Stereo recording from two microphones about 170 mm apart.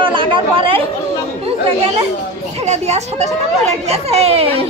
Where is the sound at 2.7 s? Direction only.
40° right (ahead or behind).